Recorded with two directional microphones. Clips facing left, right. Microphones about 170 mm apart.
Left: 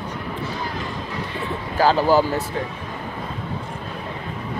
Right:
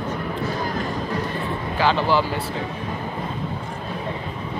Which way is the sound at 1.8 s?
40° left (ahead or behind).